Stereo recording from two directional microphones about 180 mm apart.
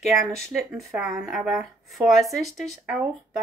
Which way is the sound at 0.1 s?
Centre (ahead or behind).